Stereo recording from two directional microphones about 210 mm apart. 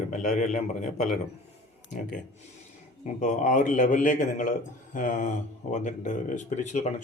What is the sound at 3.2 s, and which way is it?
Speech, 35° left (ahead or behind).